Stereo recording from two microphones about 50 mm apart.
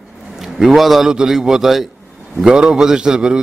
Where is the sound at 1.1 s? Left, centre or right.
Centre.